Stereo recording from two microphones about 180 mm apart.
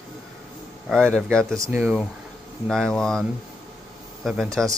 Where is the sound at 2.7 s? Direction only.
5° left (ahead or behind).